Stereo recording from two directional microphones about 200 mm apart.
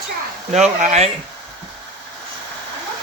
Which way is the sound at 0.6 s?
35° right (ahead or behind).